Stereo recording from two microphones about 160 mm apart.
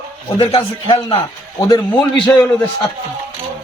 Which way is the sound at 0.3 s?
35° left (ahead or behind).